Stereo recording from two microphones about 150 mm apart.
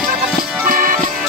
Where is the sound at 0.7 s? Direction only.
65° right (ahead or behind).